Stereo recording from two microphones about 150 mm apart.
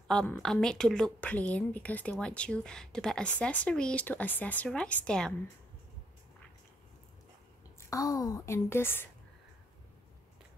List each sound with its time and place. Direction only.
0.1 s a woman's voice: 5° left (ahead or behind)
7.9 s a woman's voice: 20° left (ahead or behind)